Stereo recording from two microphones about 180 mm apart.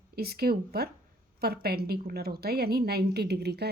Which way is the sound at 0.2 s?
60° right (ahead or behind).